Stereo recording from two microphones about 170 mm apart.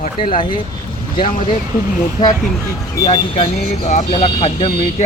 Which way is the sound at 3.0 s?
35° left (ahead or behind).